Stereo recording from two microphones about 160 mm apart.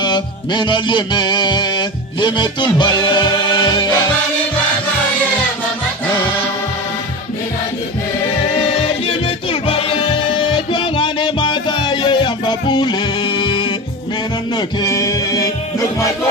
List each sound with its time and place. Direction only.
0.0 s music: 30° left (ahead or behind)
8.7 s music: 35° left (ahead or behind); by 15.4 s 20° left (ahead or behind)